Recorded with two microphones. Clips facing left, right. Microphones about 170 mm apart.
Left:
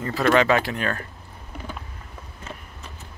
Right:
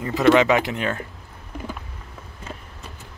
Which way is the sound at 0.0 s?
20° right (ahead or behind).